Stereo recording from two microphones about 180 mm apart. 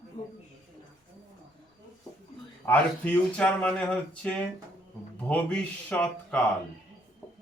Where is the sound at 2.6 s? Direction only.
10° left (ahead or behind).